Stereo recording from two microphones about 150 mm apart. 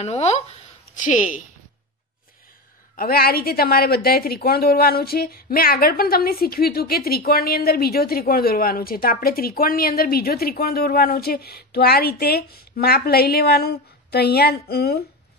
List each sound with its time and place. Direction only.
0.0 s speech: 45° left (ahead or behind)
3.0 s a woman's voice: 90° left